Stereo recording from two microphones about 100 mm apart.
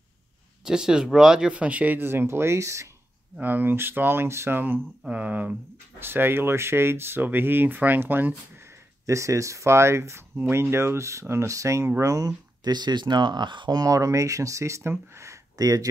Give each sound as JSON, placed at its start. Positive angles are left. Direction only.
{"t": 0.7, "sound": "speech", "side_deg": -5}
{"t": 3.3, "sound": "speech", "side_deg": -20}